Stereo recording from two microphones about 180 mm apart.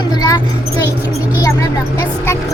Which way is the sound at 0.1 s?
20° left (ahead or behind).